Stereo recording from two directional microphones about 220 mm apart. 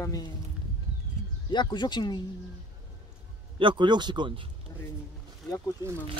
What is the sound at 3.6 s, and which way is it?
Speech, 20° right (ahead or behind).